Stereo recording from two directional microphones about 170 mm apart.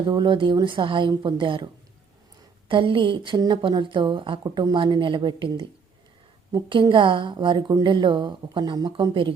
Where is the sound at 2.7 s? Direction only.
30° right (ahead or behind).